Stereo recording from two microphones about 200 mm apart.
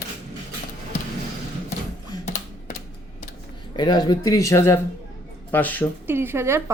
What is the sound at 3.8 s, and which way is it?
Speech, 20° left (ahead or behind).